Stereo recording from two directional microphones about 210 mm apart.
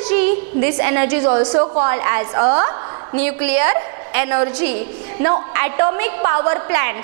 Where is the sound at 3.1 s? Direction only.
10° right (ahead or behind).